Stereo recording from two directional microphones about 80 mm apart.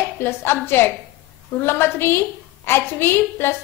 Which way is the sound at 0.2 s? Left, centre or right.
Left.